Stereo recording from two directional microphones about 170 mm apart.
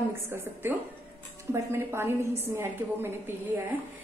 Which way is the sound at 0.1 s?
15° right (ahead or behind).